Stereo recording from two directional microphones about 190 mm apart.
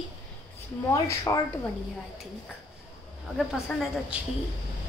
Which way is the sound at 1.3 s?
20° left (ahead or behind).